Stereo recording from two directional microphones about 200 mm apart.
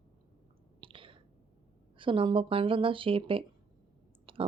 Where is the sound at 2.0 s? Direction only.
25° right (ahead or behind).